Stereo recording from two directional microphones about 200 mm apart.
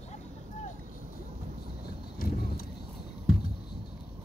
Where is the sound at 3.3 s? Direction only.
45° left (ahead or behind).